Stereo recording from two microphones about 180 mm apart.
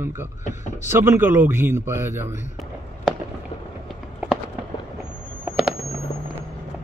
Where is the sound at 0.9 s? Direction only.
15° right (ahead or behind).